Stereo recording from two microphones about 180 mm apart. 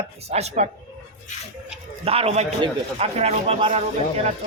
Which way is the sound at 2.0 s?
35° right (ahead or behind).